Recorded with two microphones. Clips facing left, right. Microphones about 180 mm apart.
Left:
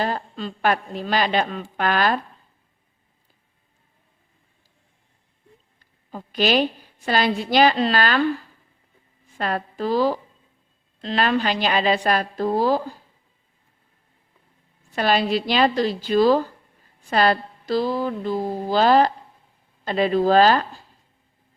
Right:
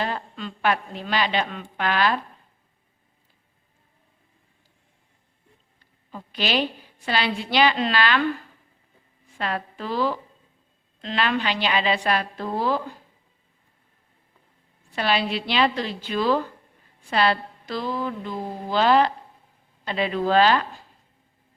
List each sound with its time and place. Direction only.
0.0 s a woman's voice: 35° left (ahead or behind)
6.1 s a woman's voice: 45° left (ahead or behind)
9.4 s speech: 40° left (ahead or behind)
14.9 s speech: 45° left (ahead or behind)